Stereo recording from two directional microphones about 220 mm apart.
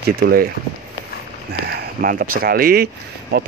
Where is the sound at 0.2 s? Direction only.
45° right (ahead or behind).